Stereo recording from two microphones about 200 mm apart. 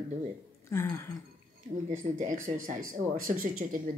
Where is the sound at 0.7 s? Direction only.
15° left (ahead or behind).